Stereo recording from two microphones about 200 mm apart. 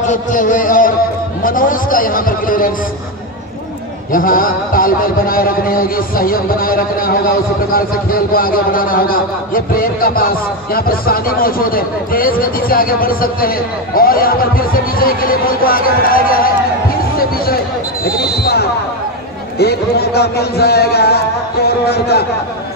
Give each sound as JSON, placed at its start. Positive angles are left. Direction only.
{"t": 0.1, "sound": "a man's voice", "side_deg": 40}
{"t": 4.1, "sound": "a man's voice", "side_deg": 45}